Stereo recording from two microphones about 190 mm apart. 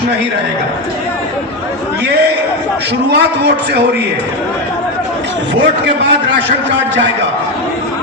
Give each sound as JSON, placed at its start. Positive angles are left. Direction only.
{"t": 3.1, "sound": "a man's voice", "side_deg": -60}
{"t": 5.5, "sound": "a man's voice", "side_deg": -65}